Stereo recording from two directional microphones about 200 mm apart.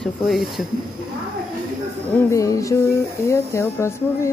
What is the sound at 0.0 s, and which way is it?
Speech, centre (ahead or behind).